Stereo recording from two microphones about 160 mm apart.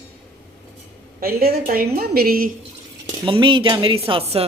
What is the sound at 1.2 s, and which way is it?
A woman's voice, 70° right (ahead or behind).